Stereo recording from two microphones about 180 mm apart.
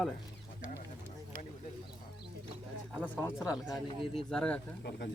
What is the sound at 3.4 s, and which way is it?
Speech, centre (ahead or behind).